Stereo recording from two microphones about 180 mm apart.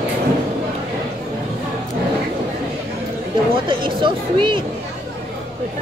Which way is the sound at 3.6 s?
30° right (ahead or behind).